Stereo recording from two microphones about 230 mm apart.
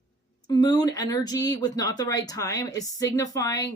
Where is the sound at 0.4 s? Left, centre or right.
Centre.